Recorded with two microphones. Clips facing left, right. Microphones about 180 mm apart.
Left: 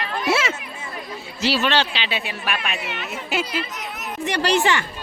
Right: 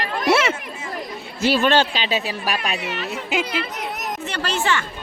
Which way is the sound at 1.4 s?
50° right (ahead or behind).